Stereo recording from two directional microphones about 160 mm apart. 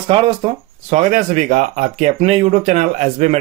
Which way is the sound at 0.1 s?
30° right (ahead or behind).